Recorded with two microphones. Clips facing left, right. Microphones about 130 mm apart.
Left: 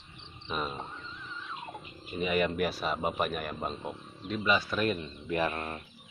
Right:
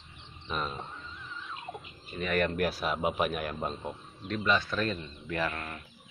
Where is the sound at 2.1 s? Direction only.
5° left (ahead or behind); by 5.8 s 25° left (ahead or behind).